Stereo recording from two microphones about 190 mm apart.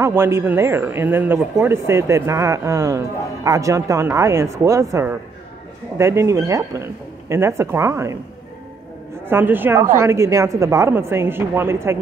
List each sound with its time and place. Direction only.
0.0 s a man's voice: 15° right (ahead or behind)
9.2 s a man's voice: 10° right (ahead or behind)